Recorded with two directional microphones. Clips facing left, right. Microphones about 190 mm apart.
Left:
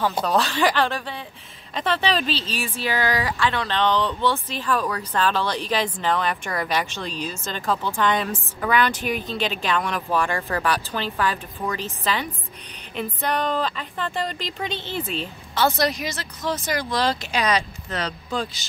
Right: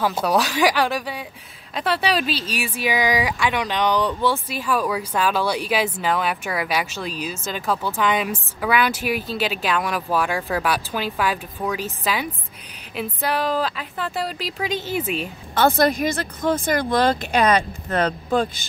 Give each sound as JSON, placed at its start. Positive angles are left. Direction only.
{"t": 0.0, "sound": "speech", "side_deg": -10}
{"t": 15.5, "sound": "speech", "side_deg": -50}